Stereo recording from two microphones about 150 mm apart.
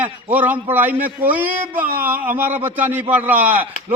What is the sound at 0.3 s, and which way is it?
A man's voice, 10° right (ahead or behind).